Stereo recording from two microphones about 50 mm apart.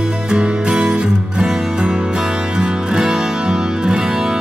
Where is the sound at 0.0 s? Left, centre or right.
Centre.